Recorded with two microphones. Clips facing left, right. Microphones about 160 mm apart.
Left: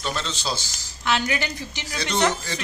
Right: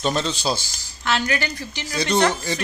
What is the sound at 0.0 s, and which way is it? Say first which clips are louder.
Speech: right 6 dB; 15° right (ahead or behind).